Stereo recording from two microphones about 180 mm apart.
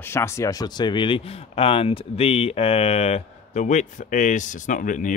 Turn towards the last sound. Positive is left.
turn(degrees=45)  # may be behind; listen again after turning